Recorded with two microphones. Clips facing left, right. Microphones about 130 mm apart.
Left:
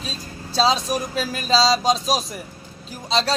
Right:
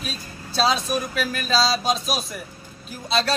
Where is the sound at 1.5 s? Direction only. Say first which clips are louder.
Left 4 dB; 90° left.